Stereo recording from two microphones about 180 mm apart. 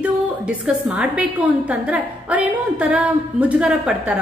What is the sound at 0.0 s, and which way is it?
A woman's voice, 5° right (ahead or behind).